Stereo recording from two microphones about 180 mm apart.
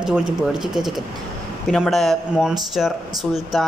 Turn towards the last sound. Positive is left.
turn(degrees=0)  # may be behind; listen again after turning